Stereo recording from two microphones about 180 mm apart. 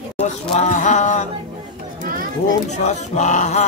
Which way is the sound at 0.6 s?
45° left (ahead or behind).